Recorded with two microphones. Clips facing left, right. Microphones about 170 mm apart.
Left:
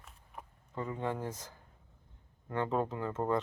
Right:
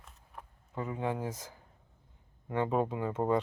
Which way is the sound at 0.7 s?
10° right (ahead or behind).